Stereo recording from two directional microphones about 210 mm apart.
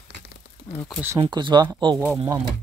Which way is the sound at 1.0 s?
15° right (ahead or behind).